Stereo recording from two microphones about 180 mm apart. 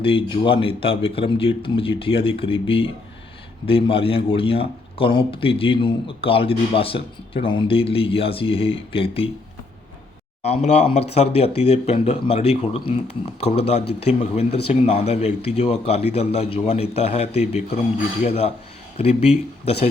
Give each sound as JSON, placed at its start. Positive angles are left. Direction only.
{"t": 0.0, "sound": "a man's voice", "side_deg": 30}
{"t": 10.4, "sound": "a man's voice", "side_deg": 35}